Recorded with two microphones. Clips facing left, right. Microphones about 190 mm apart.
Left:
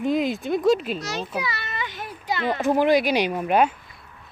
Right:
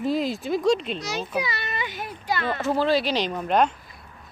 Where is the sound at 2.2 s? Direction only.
15° left (ahead or behind).